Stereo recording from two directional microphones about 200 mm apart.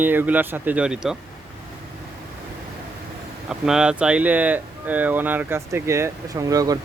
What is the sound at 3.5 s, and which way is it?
Speech, 5° right (ahead or behind).